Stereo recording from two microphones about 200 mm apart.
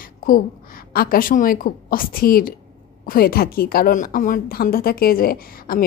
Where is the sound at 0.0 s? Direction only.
45° left (ahead or behind).